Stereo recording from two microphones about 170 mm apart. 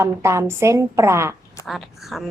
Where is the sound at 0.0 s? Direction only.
15° right (ahead or behind).